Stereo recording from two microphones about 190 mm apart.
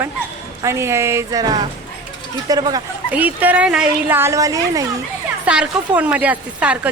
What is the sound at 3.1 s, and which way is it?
Speech, 10° right (ahead or behind).